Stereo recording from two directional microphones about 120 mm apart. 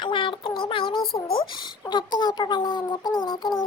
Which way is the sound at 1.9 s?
35° left (ahead or behind).